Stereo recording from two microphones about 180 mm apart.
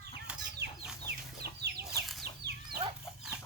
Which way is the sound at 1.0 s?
65° right (ahead or behind).